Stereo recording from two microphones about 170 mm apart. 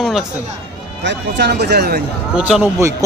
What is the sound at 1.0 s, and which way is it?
Speech, 80° right.